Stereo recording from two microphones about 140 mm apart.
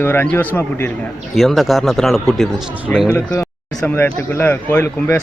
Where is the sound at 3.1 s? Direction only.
20° left (ahead or behind).